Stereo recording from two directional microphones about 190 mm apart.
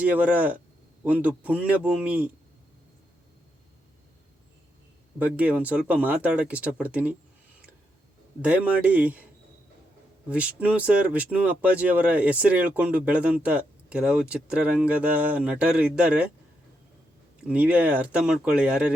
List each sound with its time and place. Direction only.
0.0 s speech: 10° right (ahead or behind)
5.2 s speech: 10° right (ahead or behind)
8.4 s speech: 5° right (ahead or behind)
10.2 s speech: 5° right (ahead or behind)
17.4 s speech: 5° right (ahead or behind)